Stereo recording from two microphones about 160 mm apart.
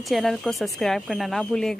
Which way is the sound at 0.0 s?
Centre (ahead or behind).